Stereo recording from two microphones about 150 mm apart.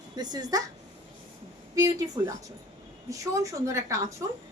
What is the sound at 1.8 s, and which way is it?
Speech, 25° right (ahead or behind).